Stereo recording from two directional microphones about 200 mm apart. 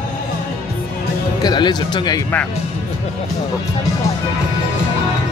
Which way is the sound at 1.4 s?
20° left (ahead or behind).